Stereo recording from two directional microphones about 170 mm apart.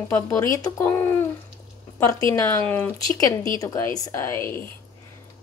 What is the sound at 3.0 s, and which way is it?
A woman's voice, 20° left (ahead or behind).